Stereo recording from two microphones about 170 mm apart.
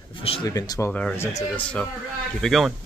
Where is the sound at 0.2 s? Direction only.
35° left (ahead or behind).